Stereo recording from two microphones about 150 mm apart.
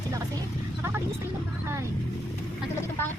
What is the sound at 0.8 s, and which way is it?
Vehicle, 15° right (ahead or behind).